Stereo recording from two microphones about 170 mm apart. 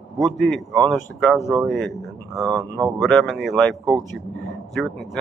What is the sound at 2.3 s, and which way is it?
Speech, 20° right (ahead or behind).